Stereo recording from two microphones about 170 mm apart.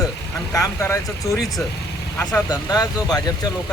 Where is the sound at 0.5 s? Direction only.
15° left (ahead or behind).